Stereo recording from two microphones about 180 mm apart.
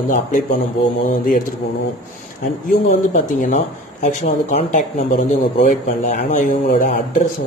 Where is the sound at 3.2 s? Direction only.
45° left (ahead or behind).